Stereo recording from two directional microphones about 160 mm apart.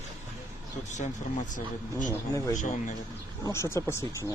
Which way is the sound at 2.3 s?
20° left (ahead or behind).